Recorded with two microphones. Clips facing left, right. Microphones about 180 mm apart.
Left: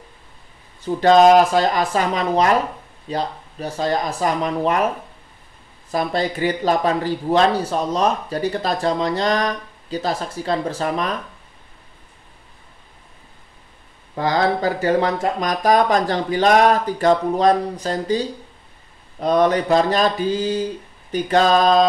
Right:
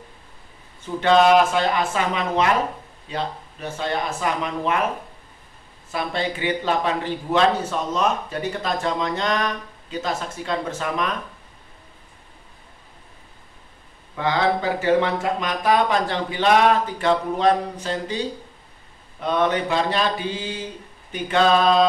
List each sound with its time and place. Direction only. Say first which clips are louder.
1.0 s speech: left 4 dB; 40° left (ahead or behind)
5.9 s speech: left 4 dB; 40° left (ahead or behind)
14.1 s speech: left 2 dB; 40° left (ahead or behind)